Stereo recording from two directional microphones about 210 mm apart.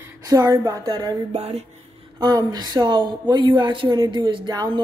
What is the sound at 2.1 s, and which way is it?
Speech, 20° right (ahead or behind).